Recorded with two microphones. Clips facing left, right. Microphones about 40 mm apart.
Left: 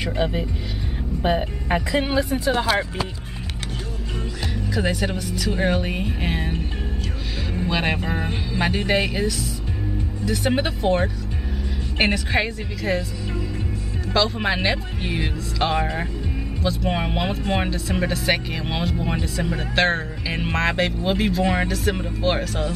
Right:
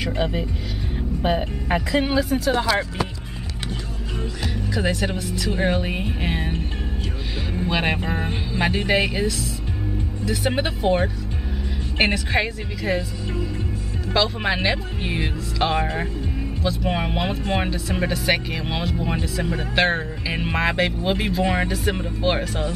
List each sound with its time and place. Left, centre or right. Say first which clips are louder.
0.0 s speech: even; centre
2.5 s speech: left 1 dB; left
4.7 s speech: even; centre